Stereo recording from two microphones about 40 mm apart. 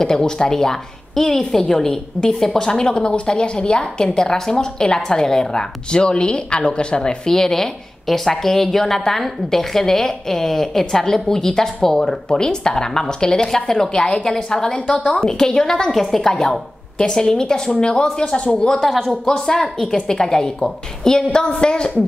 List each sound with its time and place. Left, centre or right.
0.0 s a woman's voice: centre
7.2 s a woman's voice: centre
18.7 s a woman's voice: centre